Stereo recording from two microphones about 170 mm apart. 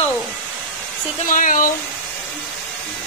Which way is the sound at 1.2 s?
50° left (ahead or behind).